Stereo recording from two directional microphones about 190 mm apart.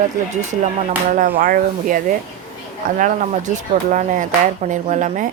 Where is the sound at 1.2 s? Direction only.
45° right (ahead or behind).